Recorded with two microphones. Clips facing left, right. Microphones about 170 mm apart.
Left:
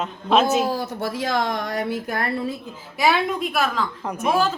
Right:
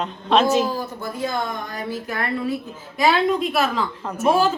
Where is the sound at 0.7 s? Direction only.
90° left; by 1.9 s 70° left (ahead or behind).